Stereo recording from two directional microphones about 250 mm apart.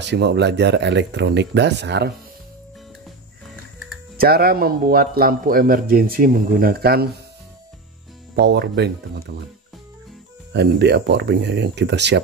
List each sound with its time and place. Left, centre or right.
0.0 s speech: right
4.2 s speech: right
8.4 s speech: right
10.5 s speech: right